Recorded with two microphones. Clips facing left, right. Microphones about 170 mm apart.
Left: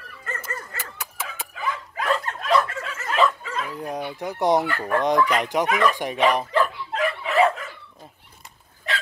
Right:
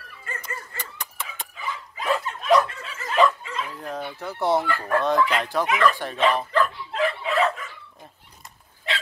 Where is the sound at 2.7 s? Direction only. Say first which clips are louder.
Left 5 dB; 45° left (ahead or behind).